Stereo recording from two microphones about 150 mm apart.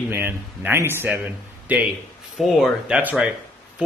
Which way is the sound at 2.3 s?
5° right (ahead or behind).